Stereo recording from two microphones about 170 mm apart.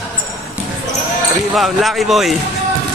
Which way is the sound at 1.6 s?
Centre (ahead or behind).